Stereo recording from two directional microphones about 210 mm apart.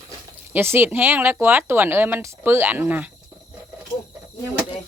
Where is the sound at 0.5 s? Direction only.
10° right (ahead or behind).